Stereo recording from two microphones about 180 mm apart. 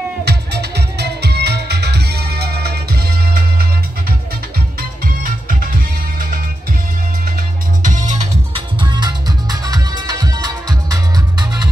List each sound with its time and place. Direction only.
0.2 s music: 65° right (ahead or behind)
5.0 s music: 50° right (ahead or behind)
7.8 s music: 45° right (ahead or behind)
8.7 s music: 25° right (ahead or behind)